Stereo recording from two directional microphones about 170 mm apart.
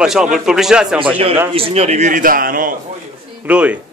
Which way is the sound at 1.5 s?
35° right (ahead or behind).